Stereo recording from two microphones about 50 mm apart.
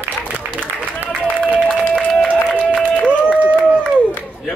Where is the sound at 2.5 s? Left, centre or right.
Left.